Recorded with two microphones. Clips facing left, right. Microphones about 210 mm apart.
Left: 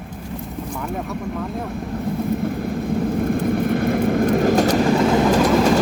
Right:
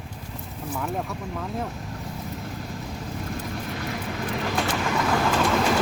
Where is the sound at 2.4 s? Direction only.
55° left (ahead or behind); by 5.2 s 25° left (ahead or behind).